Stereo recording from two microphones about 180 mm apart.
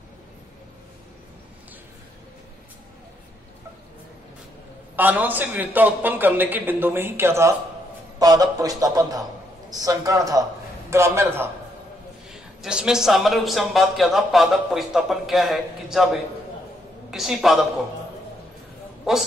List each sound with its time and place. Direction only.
4.9 s a man's voice: 10° right (ahead or behind)
12.3 s a man's voice: 5° right (ahead or behind)